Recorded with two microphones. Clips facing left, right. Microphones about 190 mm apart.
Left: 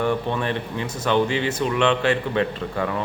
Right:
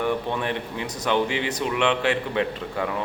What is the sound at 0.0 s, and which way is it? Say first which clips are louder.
A man's voice: left 2 dB; 15° right (ahead or behind).